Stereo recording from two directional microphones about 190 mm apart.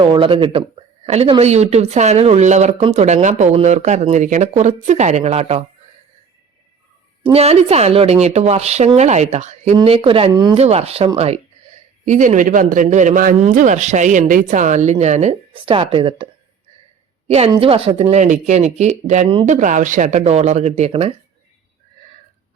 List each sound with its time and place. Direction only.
0.0 s speech: 25° right (ahead or behind)
7.2 s a woman's voice: 30° right (ahead or behind)